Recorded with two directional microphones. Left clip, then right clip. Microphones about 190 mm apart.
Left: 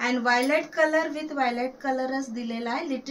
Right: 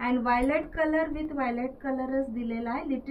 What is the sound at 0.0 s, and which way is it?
A woman's voice, 20° left (ahead or behind).